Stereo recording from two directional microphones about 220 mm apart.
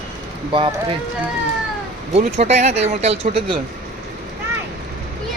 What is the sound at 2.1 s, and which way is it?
Speech, 30° right (ahead or behind).